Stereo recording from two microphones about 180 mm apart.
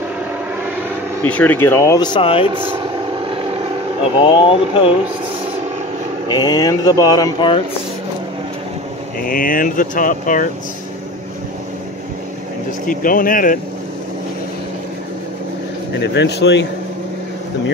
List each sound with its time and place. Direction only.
1.2 s speech: 10° left (ahead or behind)
2.1 s speech: 30° left (ahead or behind)
2.8 s vehicle: 25° right (ahead or behind)
4.2 s speech: 30° left (ahead or behind)
6.3 s speech: 20° left (ahead or behind)
9.2 s speech: 50° left (ahead or behind)
12.8 s speech: 50° left (ahead or behind)
16.0 s speech: 75° left (ahead or behind)